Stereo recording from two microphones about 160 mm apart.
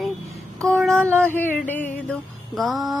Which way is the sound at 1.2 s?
10° left (ahead or behind).